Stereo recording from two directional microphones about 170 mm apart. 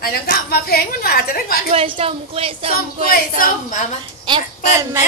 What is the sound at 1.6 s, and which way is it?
A woman's voice, 35° right (ahead or behind).